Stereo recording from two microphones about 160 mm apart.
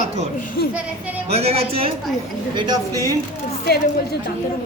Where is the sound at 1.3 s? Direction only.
40° right (ahead or behind); by 3.2 s 20° right (ahead or behind).